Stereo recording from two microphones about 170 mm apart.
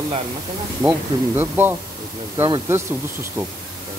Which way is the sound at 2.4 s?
25° right (ahead or behind).